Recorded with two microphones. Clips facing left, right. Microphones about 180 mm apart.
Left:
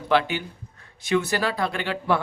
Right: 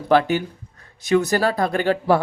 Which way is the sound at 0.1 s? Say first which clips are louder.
Right 5 dB; 45° right (ahead or behind).